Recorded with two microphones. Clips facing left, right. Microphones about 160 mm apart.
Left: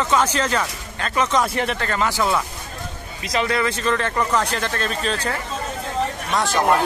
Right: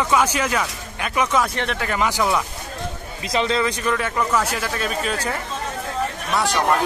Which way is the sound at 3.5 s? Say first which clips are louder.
Even; 15° right (ahead or behind).